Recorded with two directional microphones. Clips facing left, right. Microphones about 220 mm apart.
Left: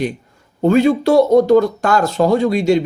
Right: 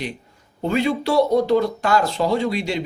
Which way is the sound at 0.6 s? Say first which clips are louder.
Left 8 dB; 45° left (ahead or behind).